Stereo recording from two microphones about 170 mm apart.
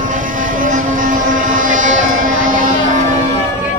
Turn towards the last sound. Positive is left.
turn(degrees=-45)  # may be behind; listen again after turning